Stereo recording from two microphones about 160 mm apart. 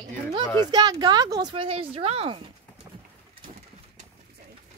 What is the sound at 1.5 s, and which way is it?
Speech, 35° right (ahead or behind).